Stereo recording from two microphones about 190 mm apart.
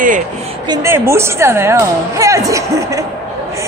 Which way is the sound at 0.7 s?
15° right (ahead or behind).